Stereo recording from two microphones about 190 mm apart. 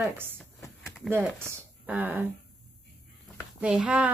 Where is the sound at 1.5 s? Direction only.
10° right (ahead or behind).